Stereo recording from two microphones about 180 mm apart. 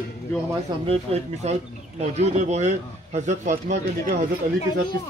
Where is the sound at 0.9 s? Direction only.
35° right (ahead or behind).